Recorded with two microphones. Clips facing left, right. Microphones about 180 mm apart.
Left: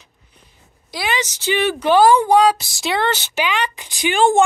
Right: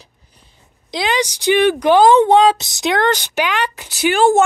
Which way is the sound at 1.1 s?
15° right (ahead or behind).